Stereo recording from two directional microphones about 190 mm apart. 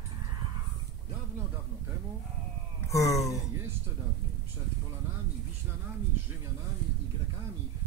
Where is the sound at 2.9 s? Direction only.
15° left (ahead or behind).